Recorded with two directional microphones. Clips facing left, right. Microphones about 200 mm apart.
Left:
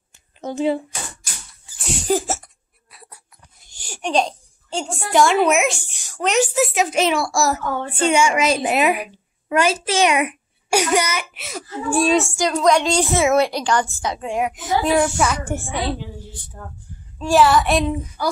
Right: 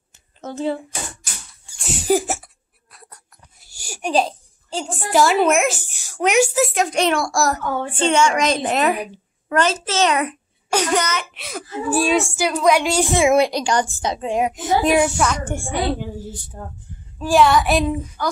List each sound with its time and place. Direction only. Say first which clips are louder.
0.4 s speech: left 3 dB; 15° left (ahead or behind)
1.7 s a sound: left 1 dB; centre (ahead or behind)
2.0 s sneeze: right 2 dB; 10° right (ahead or behind)
2.9 s a sound: even; 5° left (ahead or behind)
3.6 s a sound: right 1 dB; 10° right (ahead or behind)
5.1 s a woman's voice: even; 5° right (ahead or behind)
6.5 s a woman's voice: even; centre (ahead or behind)
8.0 s a woman's voice: even; 10° left (ahead or behind); by 15.0 s 20° right (ahead or behind)
15.0 s a woman's voice: even; 5° left (ahead or behind)
16.6 s speech: even; 25° right (ahead or behind)
17.2 s a woman's voice: even; centre (ahead or behind)
18.2 s speech: left 2 dB; 10° left (ahead or behind)